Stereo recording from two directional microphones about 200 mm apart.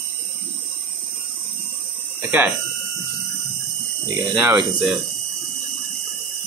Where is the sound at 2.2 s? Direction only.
10° right (ahead or behind).